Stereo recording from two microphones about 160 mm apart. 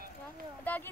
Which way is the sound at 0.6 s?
10° left (ahead or behind).